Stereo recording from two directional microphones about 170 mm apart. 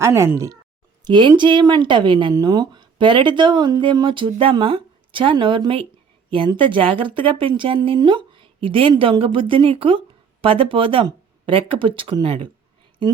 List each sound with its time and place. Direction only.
0.0 s speech: 15° right (ahead or behind)
1.0 s speech: 25° right (ahead or behind)